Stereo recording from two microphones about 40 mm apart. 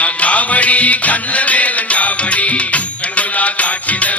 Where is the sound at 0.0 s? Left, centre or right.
Left.